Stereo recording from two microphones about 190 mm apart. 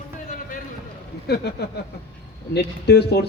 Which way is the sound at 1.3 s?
60° left (ahead or behind).